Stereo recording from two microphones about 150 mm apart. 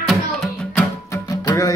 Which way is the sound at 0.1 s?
Centre (ahead or behind).